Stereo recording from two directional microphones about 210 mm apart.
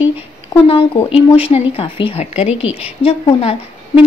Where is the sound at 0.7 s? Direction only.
25° left (ahead or behind).